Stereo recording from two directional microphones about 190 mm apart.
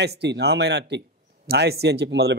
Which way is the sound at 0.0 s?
60° right (ahead or behind).